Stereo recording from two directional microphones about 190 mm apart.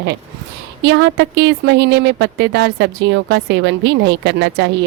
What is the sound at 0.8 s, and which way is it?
A woman's voice, 70° right (ahead or behind).